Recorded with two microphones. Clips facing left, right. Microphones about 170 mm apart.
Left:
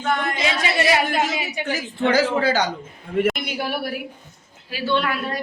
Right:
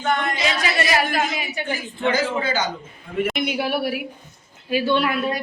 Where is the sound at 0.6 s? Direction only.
25° left (ahead or behind).